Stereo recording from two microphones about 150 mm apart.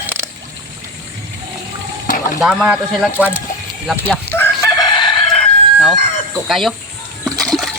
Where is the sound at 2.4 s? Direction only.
5° right (ahead or behind).